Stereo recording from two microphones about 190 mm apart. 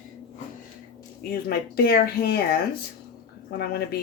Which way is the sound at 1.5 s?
55° left (ahead or behind).